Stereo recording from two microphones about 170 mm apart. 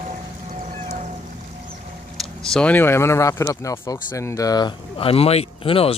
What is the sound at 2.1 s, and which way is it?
Speech, 5° left (ahead or behind).